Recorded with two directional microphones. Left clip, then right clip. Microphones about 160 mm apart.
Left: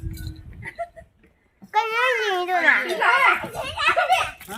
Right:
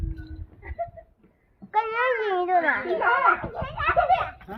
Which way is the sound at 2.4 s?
5° right (ahead or behind).